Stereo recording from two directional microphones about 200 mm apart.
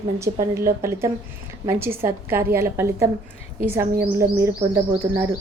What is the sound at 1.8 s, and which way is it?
A woman's voice, 10° right (ahead or behind).